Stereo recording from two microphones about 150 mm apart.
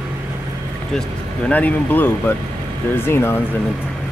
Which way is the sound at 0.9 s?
10° left (ahead or behind).